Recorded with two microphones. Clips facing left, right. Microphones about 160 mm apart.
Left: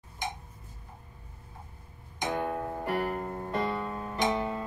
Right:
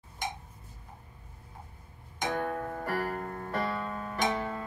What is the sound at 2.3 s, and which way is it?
Music, 15° left (ahead or behind).